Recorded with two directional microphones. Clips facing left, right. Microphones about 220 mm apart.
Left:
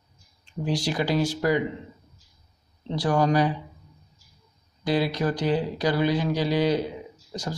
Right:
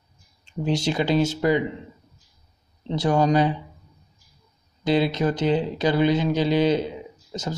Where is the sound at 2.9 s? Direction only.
20° right (ahead or behind).